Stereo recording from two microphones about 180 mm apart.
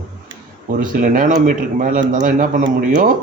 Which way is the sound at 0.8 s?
45° right (ahead or behind).